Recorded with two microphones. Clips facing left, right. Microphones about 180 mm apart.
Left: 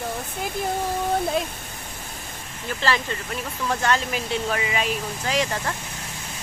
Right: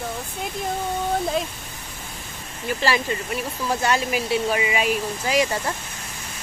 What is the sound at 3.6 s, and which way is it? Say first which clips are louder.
Speech: right 1 dB; 10° right (ahead or behind).